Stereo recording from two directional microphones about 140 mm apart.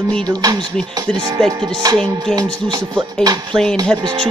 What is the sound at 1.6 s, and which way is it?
Speech, 30° right (ahead or behind).